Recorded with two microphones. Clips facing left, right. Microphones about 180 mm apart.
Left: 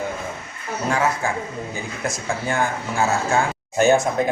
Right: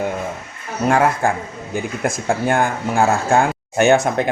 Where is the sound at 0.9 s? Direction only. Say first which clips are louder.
Right 6 dB; 55° right (ahead or behind).